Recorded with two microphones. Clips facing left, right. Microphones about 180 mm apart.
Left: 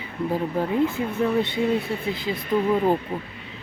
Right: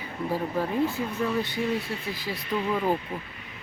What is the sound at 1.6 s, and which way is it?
Speech, 55° left (ahead or behind).